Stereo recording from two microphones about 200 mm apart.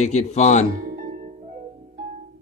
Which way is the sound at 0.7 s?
45° right (ahead or behind).